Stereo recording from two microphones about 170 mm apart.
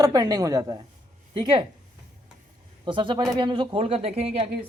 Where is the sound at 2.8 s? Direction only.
30° right (ahead or behind).